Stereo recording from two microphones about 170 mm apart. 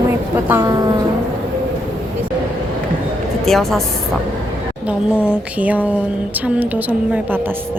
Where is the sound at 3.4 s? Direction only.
Centre (ahead or behind).